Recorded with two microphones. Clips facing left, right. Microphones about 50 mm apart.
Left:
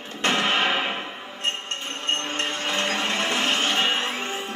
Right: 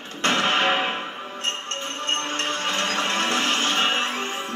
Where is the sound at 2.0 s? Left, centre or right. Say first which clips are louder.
Right 1 dB; right.